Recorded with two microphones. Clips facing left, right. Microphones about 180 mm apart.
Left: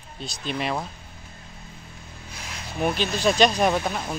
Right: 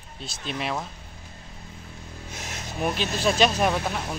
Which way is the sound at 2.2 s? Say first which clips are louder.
Right 2 dB; 45° right (ahead or behind).